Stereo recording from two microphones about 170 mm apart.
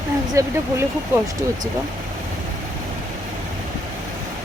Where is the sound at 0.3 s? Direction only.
15° right (ahead or behind).